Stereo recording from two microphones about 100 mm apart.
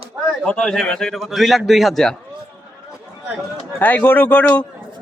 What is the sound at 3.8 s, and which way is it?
Speech, 15° left (ahead or behind).